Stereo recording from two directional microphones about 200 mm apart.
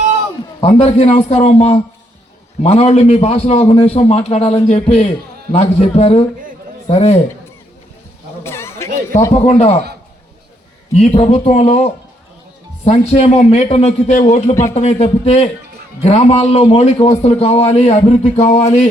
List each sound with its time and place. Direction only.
0.6 s a man's voice: 30° left (ahead or behind)
8.4 s a sound: 15° left (ahead or behind)
9.3 s a man's voice: 35° left (ahead or behind)
10.9 s a man's voice: 35° left (ahead or behind)